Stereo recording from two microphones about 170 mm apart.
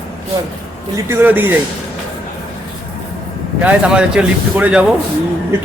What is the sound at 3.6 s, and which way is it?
A man's voice, 5° right (ahead or behind).